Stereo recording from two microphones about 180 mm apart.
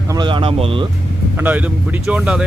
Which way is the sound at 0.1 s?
25° right (ahead or behind).